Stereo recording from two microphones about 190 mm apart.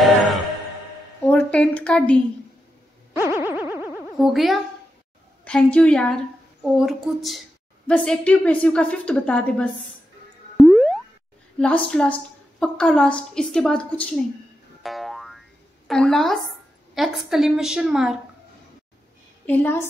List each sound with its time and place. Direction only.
1.2 s a woman's voice: 5° left (ahead or behind)
3.3 s boing: 10° right (ahead or behind)
4.1 s a woman's voice: centre (ahead or behind)
10.6 s boing: centre (ahead or behind)
11.5 s a woman's voice: 5° left (ahead or behind)
14.8 s boing: centre (ahead or behind)
15.9 s a woman's voice: centre (ahead or behind)
19.4 s a woman's voice: 10° left (ahead or behind)